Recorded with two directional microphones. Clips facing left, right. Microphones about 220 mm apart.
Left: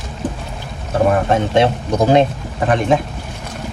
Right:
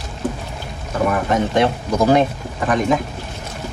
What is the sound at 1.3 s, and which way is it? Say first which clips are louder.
Speech: left 2 dB; 25° left (ahead or behind).